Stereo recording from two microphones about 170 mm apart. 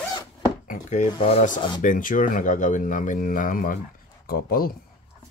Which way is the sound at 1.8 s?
50° left (ahead or behind).